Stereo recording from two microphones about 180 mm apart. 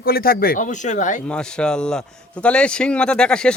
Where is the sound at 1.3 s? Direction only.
5° left (ahead or behind).